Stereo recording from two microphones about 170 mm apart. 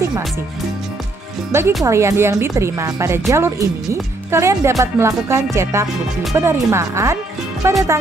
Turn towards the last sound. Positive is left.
turn(degrees=-15)  # may be behind; listen again after turning